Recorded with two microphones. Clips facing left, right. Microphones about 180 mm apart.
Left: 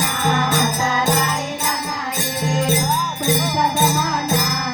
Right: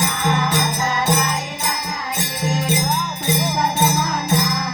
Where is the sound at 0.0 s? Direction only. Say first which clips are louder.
Even; 55° left (ahead or behind).